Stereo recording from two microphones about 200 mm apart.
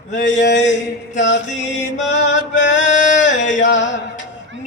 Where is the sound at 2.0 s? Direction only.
65° left (ahead or behind).